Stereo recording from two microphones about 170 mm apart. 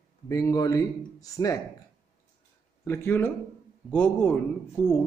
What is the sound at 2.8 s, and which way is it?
A man's voice, 15° left (ahead or behind).